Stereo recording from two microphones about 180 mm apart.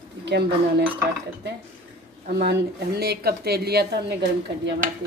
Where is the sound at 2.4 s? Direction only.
65° right (ahead or behind).